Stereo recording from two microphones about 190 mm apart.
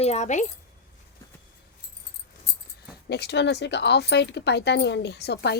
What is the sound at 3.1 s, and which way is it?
Speech, 60° left (ahead or behind).